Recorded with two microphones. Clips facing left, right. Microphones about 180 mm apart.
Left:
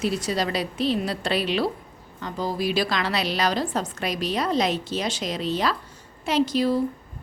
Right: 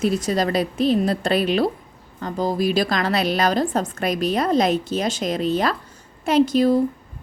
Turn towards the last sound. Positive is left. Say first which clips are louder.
# right 5 dB
turn(degrees=-50)  # may be behind; listen again after turning